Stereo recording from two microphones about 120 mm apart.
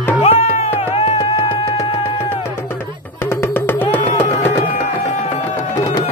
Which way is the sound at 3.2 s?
20° left (ahead or behind).